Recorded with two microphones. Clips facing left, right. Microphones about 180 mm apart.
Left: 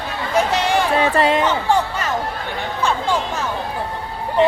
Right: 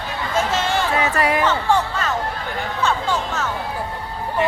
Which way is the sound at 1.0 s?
30° left (ahead or behind).